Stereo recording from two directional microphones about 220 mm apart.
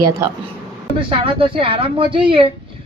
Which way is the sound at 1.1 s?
25° right (ahead or behind).